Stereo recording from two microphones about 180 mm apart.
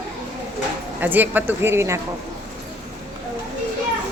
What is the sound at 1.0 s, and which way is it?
A woman's voice, 10° right (ahead or behind).